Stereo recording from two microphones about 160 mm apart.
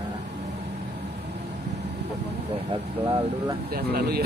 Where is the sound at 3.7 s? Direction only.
75° right (ahead or behind).